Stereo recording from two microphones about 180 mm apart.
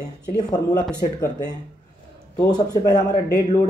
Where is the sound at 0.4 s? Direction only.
20° left (ahead or behind).